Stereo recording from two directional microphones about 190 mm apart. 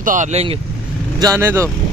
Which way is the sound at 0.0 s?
40° right (ahead or behind).